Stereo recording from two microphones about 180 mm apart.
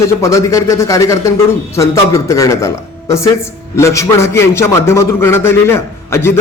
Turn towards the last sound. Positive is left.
turn(degrees=15)  # may be behind; listen again after turning